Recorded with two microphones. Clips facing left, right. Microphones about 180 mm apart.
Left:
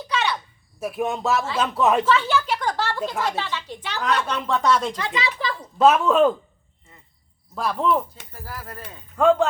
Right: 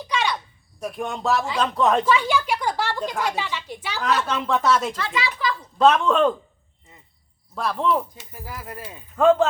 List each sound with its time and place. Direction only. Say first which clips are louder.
0.1 s a sound: even; 10° right (ahead or behind)
0.8 s speech: left 3 dB; 5° left (ahead or behind)
2.0 s a sound: even; 15° right (ahead or behind)
3.2 s a woman's voice: even; 10° right (ahead or behind)
4.9 s speech: even; 20° left (ahead or behind)
5.7 s speech: left 1 dB; 5° left (ahead or behind)
6.9 s a sound: right 1 dB; 20° right (ahead or behind)
7.5 s speech: left 1 dB; centre (ahead or behind)
8.3 s a woman's voice: right 1 dB; 15° right (ahead or behind)
9.1 s speech: right 1 dB; centre (ahead or behind)